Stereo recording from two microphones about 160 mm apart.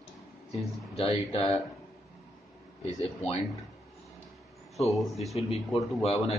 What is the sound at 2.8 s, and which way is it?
Speech, 40° left (ahead or behind).